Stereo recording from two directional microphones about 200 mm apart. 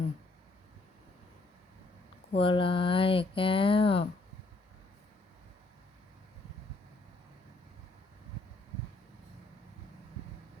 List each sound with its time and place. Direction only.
2.3 s speech: 25° left (ahead or behind)